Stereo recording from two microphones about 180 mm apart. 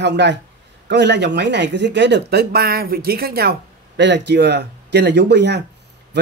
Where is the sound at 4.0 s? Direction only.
75° right (ahead or behind).